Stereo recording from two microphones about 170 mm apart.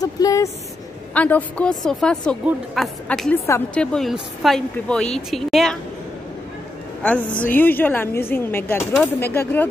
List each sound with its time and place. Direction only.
0.0 s speech: 20° left (ahead or behind)
1.1 s a woman's voice: 10° left (ahead or behind)
7.0 s speech: 10° left (ahead or behind)